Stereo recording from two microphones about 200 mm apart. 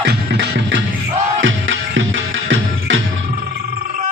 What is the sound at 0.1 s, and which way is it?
Music, 60° right (ahead or behind).